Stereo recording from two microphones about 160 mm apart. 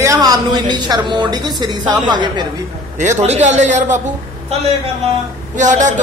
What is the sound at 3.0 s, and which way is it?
A man's voice, 50° right (ahead or behind).